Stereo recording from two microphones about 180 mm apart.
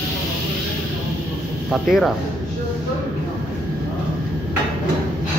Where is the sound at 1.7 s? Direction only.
Centre (ahead or behind).